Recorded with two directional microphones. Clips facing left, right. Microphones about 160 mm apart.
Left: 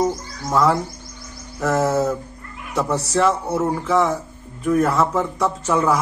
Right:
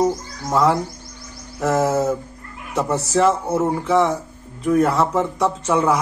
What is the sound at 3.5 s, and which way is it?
Speech, 10° right (ahead or behind).